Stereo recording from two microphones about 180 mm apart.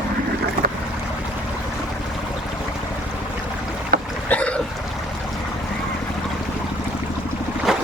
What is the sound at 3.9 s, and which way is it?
Boat, 55° right (ahead or behind).